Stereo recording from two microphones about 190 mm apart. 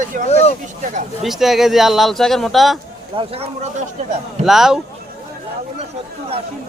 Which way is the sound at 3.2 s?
30° right (ahead or behind).